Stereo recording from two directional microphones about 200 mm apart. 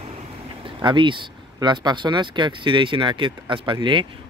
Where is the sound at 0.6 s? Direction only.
25° right (ahead or behind).